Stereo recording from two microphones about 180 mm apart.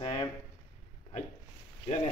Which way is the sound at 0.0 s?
30° left (ahead or behind).